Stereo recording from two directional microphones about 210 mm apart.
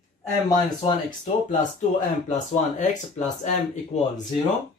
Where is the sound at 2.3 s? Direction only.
35° left (ahead or behind).